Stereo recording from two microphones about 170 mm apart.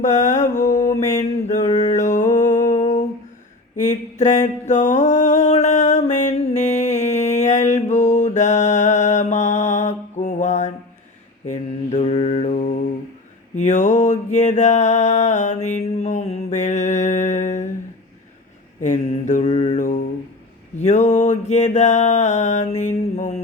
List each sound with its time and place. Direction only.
0.0 s mantra: 45° left (ahead or behind)
0.9 s a sound: 45° left (ahead or behind)
11.4 s mantra: 45° left (ahead or behind)
13.6 s music: 45° left (ahead or behind)
18.8 s mantra: 45° left (ahead or behind)